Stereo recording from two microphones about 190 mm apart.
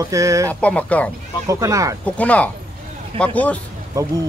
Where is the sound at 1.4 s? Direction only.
15° right (ahead or behind).